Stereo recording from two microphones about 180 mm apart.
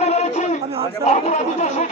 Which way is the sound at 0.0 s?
35° left (ahead or behind).